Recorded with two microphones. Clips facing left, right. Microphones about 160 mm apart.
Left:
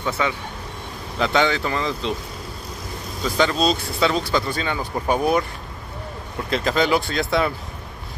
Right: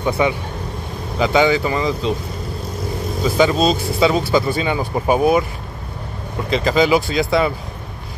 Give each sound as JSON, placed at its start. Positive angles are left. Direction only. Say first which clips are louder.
{"t": 0.2, "sound": "speech", "louder": "right 6 dB", "side_deg": -15}
{"t": 1.1, "sound": "speech", "louder": "right 5 dB", "side_deg": -5}
{"t": 3.3, "sound": "speech", "louder": "right 4 dB", "side_deg": -5}
{"t": 6.5, "sound": "speech", "louder": "right 4 dB", "side_deg": 0}